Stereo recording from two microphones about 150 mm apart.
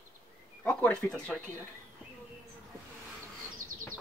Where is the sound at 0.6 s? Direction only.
10° left (ahead or behind).